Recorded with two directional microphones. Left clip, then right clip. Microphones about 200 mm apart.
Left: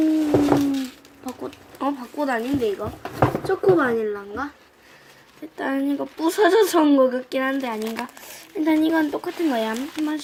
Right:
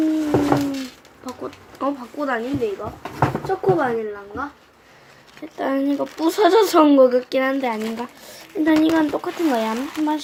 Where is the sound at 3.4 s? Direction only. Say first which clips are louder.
Left 1 dB; 45° left (ahead or behind).